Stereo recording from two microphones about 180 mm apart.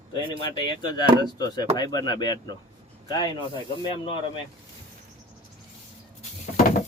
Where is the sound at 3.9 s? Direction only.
30° left (ahead or behind).